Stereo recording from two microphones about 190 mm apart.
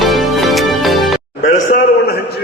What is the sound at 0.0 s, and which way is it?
Music, centre (ahead or behind).